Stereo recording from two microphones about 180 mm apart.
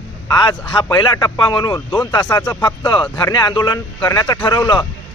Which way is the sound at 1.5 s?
25° left (ahead or behind).